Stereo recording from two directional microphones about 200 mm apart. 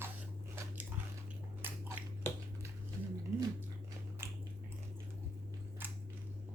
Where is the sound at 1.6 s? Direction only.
10° right (ahead or behind).